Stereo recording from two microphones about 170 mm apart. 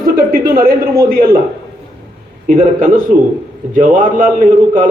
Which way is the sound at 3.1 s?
50° right (ahead or behind).